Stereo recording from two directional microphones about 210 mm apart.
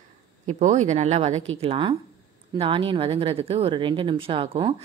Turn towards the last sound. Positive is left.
turn(degrees=-25)  # may be behind; listen again after turning